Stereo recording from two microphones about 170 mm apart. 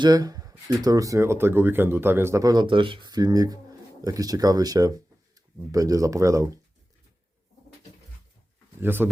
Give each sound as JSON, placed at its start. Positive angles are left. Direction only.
{"t": 0.0, "sound": "speech", "side_deg": -20}
{"t": 8.8, "sound": "speech", "side_deg": -10}